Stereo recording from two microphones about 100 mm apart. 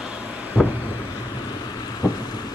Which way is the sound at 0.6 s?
10° right (ahead or behind).